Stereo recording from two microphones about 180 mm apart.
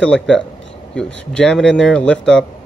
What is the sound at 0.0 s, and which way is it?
Speech, 5° left (ahead or behind).